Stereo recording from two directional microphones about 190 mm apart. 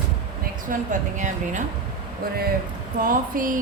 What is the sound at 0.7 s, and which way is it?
Speech, 40° right (ahead or behind).